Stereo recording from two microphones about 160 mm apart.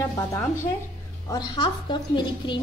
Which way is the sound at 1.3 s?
30° left (ahead or behind).